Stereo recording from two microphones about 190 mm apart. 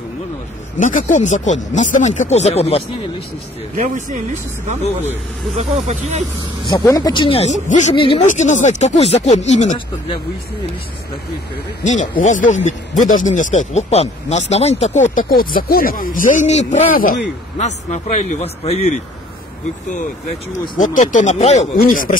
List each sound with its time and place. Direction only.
0.7 s speech: 45° left (ahead or behind)
3.7 s speech: 40° right (ahead or behind)
6.6 s speech: 20° left (ahead or behind)
8.2 s speech: 40° left (ahead or behind)
11.8 s speech: 40° left (ahead or behind)
20.7 s speech: 45° left (ahead or behind)
21.7 s speech: 45° left (ahead or behind)